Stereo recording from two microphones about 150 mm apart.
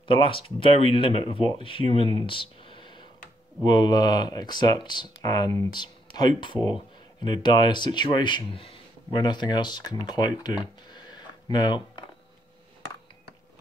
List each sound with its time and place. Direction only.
0.1 s speech: 35° left (ahead or behind)
2.2 s a sound: 35° left (ahead or behind)
3.6 s speech: 30° left (ahead or behind)